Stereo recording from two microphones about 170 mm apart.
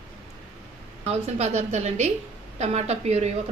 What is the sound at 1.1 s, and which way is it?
A woman's voice, 40° right (ahead or behind).